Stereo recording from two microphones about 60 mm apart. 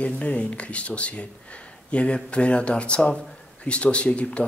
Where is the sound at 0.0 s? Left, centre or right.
Left.